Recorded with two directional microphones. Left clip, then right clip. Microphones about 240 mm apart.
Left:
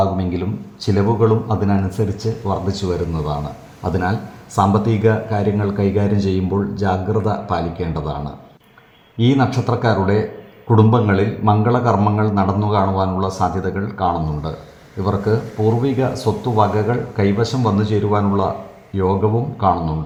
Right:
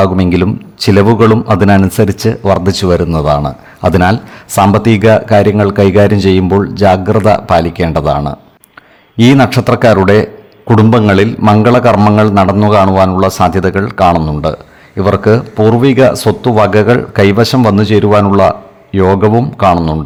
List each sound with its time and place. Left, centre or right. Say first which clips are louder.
0.0 s a man's voice: right 9 dB; right